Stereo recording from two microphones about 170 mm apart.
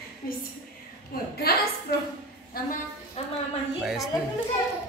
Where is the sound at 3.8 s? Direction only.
Centre (ahead or behind).